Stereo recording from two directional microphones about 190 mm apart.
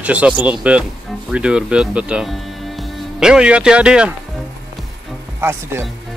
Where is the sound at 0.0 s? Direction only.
5° right (ahead or behind).